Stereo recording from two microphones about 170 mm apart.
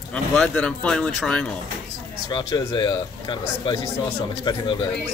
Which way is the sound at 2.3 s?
25° left (ahead or behind).